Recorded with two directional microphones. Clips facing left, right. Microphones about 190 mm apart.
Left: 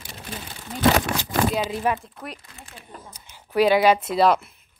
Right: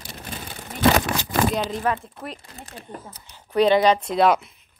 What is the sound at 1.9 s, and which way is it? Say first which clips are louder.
Speech: even; 15° left (ahead or behind).